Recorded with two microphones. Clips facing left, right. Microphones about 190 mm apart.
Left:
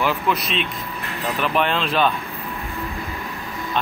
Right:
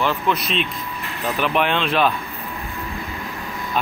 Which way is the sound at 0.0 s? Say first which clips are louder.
Even; centre (ahead or behind).